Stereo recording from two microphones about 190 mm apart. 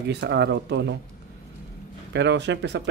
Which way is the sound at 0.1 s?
65° right (ahead or behind).